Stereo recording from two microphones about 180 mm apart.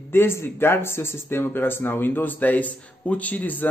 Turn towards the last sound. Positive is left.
turn(degrees=10)  # may be behind; listen again after turning